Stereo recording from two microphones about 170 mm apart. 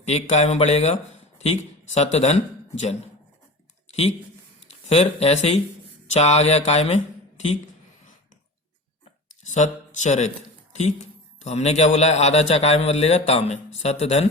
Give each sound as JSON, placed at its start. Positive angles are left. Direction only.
{"t": 0.0, "sound": "speech", "side_deg": 40}
{"t": 4.7, "sound": "speech", "side_deg": 35}
{"t": 9.3, "sound": "speech", "side_deg": 45}